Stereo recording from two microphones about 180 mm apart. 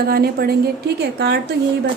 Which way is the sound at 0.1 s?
60° right (ahead or behind).